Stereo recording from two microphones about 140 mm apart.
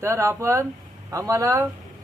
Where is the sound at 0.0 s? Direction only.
20° right (ahead or behind).